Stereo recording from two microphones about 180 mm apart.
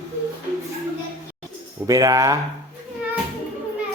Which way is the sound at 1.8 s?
20° right (ahead or behind).